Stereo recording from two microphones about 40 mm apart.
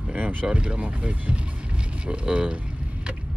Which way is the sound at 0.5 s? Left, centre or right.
Right.